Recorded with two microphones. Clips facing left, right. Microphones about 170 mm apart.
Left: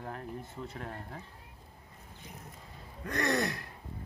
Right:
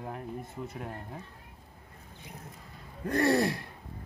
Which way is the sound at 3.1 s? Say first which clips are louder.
Right 5 dB; 35° right (ahead or behind).